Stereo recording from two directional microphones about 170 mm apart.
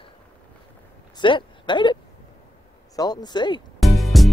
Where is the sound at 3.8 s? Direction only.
Centre (ahead or behind).